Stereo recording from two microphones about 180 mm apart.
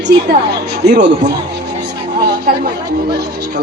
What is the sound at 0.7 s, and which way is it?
Speech, 65° right (ahead or behind).